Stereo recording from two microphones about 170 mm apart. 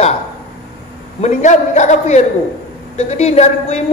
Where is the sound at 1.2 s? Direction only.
45° left (ahead or behind).